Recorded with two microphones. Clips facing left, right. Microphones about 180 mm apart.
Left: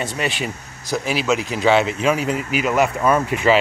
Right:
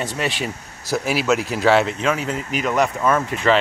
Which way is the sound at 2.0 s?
15° left (ahead or behind).